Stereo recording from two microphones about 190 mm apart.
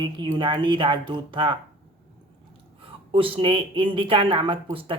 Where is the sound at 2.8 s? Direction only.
30° right (ahead or behind).